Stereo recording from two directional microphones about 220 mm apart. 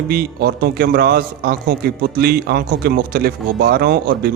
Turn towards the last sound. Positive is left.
turn(degrees=-45)  # may be behind; listen again after turning